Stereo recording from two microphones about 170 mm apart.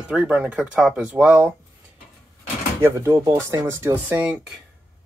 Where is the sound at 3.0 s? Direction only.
15° right (ahead or behind).